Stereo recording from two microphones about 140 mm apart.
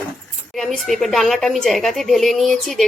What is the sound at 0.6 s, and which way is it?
A woman's voice, centre (ahead or behind).